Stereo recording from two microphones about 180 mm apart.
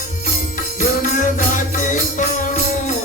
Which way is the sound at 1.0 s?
45° left (ahead or behind).